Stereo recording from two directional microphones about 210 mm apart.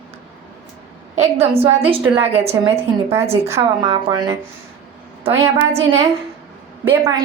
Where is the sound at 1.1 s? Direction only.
30° right (ahead or behind).